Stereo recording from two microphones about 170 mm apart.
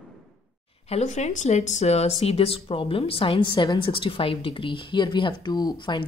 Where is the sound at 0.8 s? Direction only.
40° left (ahead or behind).